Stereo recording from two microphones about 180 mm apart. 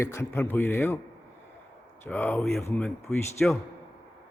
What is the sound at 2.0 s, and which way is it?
Speech, 10° left (ahead or behind).